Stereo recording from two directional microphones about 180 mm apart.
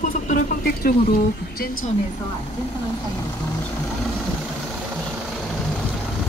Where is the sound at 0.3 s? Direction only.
50° left (ahead or behind).